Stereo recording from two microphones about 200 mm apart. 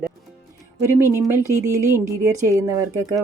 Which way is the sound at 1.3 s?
15° right (ahead or behind).